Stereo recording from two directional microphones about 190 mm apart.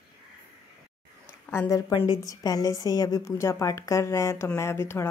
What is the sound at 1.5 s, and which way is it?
A woman's voice, 15° left (ahead or behind).